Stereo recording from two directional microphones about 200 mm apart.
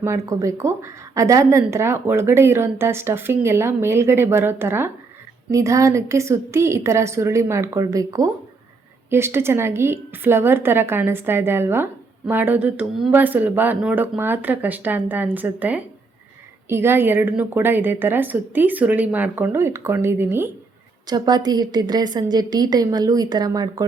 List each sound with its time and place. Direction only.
0.0 s a woman's voice: 15° right (ahead or behind)